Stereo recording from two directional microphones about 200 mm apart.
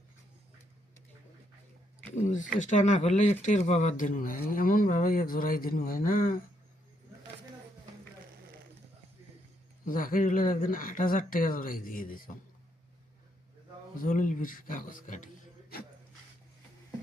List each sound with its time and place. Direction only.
2.1 s speech: 40° left (ahead or behind)
9.8 s speech: 45° left (ahead or behind)
14.0 s speech: 40° left (ahead or behind)